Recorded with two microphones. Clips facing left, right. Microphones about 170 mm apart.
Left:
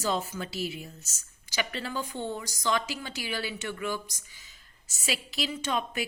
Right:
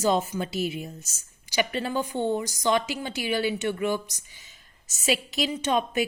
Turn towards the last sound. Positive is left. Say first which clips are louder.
# right 6 dB
turn(degrees=-20)  # may be behind; listen again after turning